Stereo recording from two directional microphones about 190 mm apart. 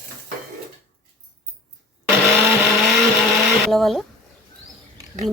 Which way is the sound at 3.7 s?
Centre (ahead or behind).